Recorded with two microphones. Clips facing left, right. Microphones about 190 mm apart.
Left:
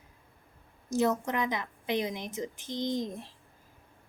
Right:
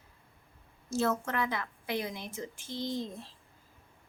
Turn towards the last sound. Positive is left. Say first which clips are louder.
# left 4 dB
turn(degrees=15)  # may be behind; listen again after turning